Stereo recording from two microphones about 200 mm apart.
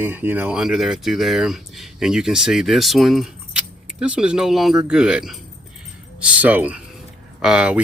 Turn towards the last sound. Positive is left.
turn(degrees=-5)  # may be behind; listen again after turning